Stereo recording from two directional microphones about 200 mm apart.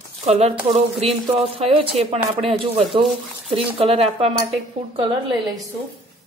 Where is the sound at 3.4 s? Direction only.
30° right (ahead or behind).